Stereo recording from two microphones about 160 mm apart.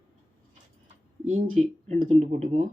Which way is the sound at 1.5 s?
45° right (ahead or behind).